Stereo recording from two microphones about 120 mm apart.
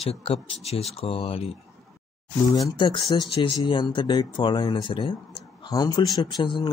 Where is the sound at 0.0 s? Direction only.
55° left (ahead or behind).